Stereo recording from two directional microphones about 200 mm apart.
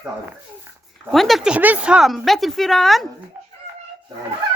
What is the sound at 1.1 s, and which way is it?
Speech, centre (ahead or behind).